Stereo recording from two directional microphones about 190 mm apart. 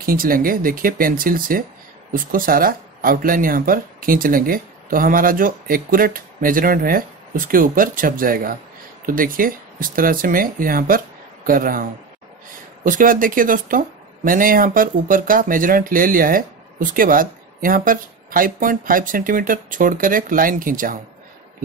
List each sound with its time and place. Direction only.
0.0 s speech: 50° right (ahead or behind)